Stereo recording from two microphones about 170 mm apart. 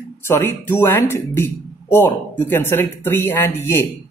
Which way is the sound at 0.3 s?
15° left (ahead or behind).